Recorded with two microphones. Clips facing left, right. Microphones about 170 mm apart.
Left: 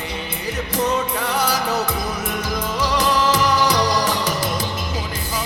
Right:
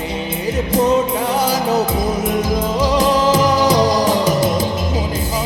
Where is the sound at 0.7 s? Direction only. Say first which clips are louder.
Right 6 dB; 25° right (ahead or behind).